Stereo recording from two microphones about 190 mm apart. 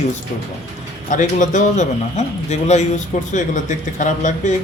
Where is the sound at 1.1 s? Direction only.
40° left (ahead or behind).